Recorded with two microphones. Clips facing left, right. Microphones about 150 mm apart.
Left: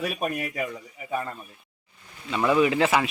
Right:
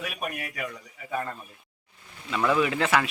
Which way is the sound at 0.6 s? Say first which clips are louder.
Left 4 dB; 20° left (ahead or behind).